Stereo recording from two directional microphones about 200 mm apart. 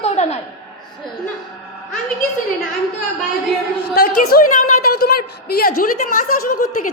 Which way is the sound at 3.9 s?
50° left (ahead or behind).